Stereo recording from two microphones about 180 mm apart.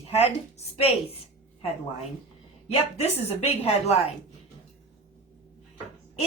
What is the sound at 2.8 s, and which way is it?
A woman's voice, 35° left (ahead or behind).